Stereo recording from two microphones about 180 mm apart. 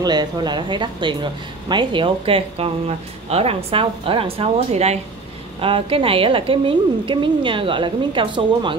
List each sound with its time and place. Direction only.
0.0 s a woman's voice: 25° right (ahead or behind)